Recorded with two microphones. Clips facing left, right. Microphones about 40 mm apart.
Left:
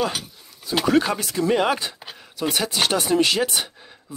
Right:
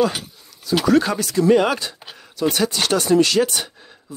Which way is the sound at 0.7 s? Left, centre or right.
Left.